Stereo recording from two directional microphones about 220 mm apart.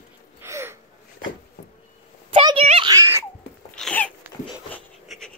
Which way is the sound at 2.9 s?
15° right (ahead or behind).